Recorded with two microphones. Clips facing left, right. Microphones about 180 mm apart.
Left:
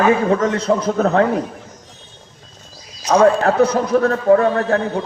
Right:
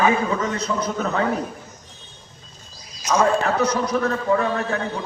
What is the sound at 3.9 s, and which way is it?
A man's voice, 55° left (ahead or behind).